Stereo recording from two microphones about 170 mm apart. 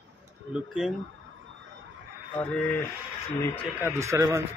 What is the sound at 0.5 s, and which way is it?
Speech, 5° right (ahead or behind).